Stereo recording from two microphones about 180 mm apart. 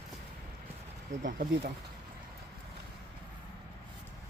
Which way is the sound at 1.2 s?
50° right (ahead or behind).